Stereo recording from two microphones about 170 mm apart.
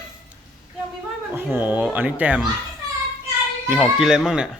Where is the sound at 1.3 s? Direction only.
10° right (ahead or behind).